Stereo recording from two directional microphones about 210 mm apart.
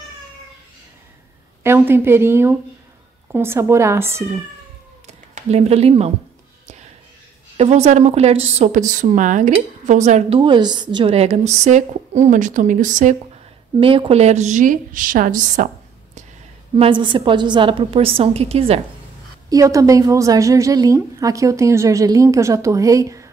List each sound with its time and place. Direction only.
1.6 s a woman's voice: 10° right (ahead or behind)
5.0 s speech: 30° right (ahead or behind)
7.5 s a woman's voice: 30° right (ahead or behind)
13.7 s a woman's voice: 25° right (ahead or behind)
16.7 s a woman's voice: 25° right (ahead or behind)
19.5 s a woman's voice: 15° right (ahead or behind)